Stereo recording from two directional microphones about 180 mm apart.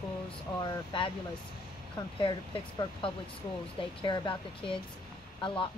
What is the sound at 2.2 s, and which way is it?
Speech, 30° left (ahead or behind).